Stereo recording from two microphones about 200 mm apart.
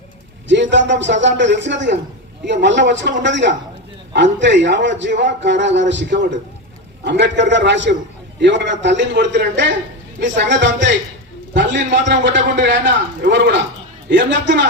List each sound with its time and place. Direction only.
0.4 s a man's voice: 65° right (ahead or behind)